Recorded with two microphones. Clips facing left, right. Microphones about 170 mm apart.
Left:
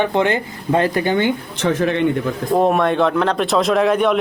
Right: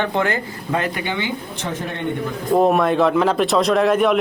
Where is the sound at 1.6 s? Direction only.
90° left.